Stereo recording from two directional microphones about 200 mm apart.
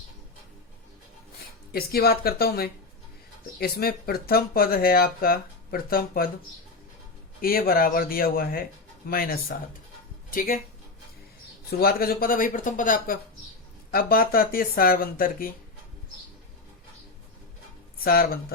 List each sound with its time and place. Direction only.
1.7 s speech: 50° left (ahead or behind)
7.4 s speech: 45° left (ahead or behind)
11.7 s speech: 50° left (ahead or behind)
18.0 s speech: 45° left (ahead or behind)